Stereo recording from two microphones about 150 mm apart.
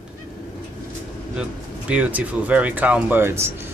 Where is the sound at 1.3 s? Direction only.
10° right (ahead or behind).